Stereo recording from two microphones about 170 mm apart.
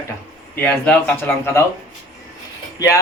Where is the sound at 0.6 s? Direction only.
10° left (ahead or behind).